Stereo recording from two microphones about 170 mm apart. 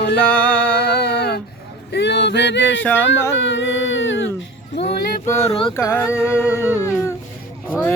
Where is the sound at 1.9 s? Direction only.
85° left.